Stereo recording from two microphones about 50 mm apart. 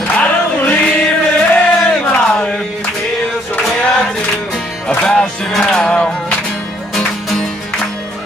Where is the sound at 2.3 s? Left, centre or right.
Centre.